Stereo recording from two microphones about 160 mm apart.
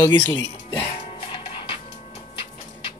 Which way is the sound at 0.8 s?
35° left (ahead or behind).